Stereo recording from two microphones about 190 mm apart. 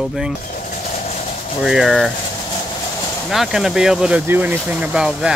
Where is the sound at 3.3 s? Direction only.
Centre (ahead or behind).